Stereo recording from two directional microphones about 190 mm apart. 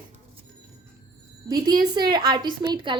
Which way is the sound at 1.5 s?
20° right (ahead or behind).